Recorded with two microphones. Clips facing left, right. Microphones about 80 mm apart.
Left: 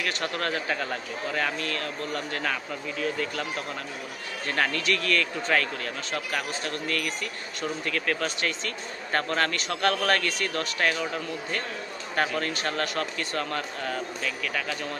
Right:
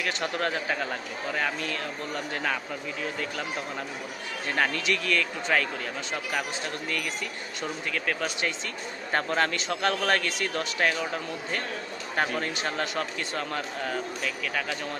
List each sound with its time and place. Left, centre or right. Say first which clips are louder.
0.0 s speech: right 1 dB; right
4.5 s speech: even; centre
12.4 s speech: left 1 dB; right